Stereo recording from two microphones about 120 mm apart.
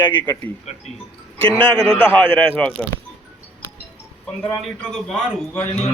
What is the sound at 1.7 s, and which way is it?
A man's voice, 10° left (ahead or behind).